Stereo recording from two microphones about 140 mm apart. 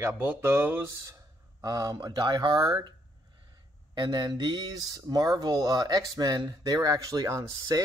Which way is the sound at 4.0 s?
30° right (ahead or behind).